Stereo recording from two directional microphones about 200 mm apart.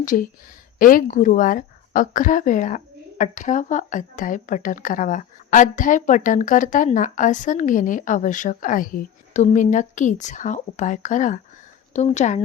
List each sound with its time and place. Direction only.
0.0 s a woman's voice: 40° left (ahead or behind)